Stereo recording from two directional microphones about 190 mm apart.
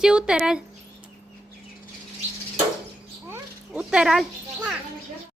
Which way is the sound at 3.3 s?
5° right (ahead or behind).